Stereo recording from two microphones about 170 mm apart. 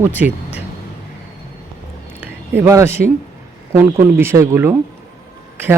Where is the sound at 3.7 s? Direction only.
15° right (ahead or behind).